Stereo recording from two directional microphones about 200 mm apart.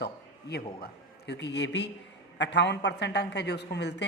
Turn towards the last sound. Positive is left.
turn(degrees=60)  # may be behind; listen again after turning